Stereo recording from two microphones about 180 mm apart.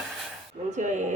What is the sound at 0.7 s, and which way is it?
Speech, 45° right (ahead or behind).